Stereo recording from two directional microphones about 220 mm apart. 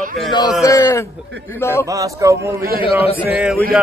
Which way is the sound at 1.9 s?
15° right (ahead or behind).